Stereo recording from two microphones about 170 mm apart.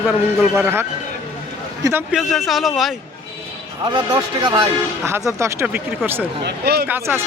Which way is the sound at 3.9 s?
25° right (ahead or behind).